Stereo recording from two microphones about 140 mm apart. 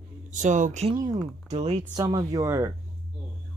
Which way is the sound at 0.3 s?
60° right (ahead or behind).